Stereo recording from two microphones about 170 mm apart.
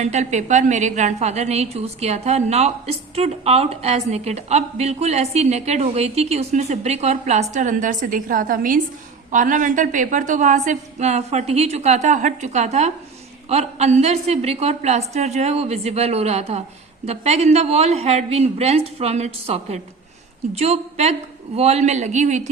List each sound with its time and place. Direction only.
0.0 s a woman's voice: 40° right (ahead or behind)